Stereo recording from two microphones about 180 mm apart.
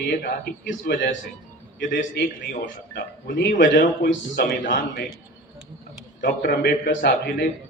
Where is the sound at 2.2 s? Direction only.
65° left (ahead or behind).